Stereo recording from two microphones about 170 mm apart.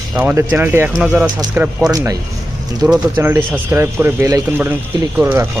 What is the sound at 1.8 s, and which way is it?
Speech, 20° right (ahead or behind).